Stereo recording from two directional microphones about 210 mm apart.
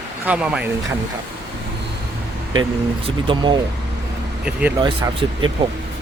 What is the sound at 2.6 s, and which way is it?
Speech, 25° right (ahead or behind).